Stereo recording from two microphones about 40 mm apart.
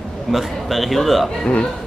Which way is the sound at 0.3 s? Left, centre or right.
Centre.